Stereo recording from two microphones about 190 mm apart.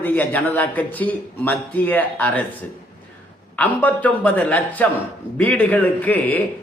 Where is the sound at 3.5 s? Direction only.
10° left (ahead or behind).